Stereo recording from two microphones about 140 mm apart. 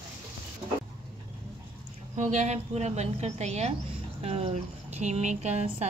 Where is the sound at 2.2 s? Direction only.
60° right (ahead or behind).